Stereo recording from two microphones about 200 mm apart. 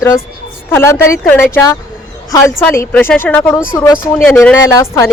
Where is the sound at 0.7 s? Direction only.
10° left (ahead or behind).